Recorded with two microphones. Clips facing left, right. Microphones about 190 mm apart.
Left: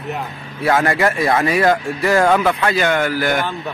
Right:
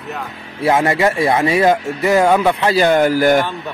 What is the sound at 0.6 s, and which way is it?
Speech, 25° right (ahead or behind).